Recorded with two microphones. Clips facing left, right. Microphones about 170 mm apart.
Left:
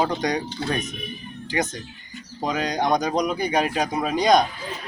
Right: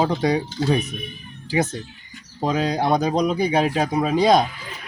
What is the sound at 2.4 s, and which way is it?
Speech, 5° right (ahead or behind).